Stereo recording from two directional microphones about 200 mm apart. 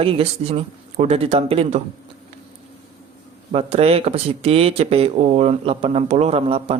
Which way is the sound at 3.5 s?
30° right (ahead or behind).